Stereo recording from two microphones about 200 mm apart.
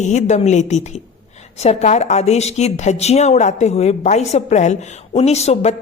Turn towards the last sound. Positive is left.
turn(degrees=35)  # may be behind; listen again after turning